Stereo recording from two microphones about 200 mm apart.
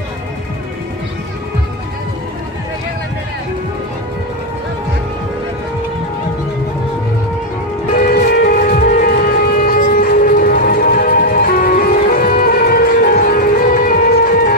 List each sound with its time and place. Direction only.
7.9 s music: 45° left (ahead or behind)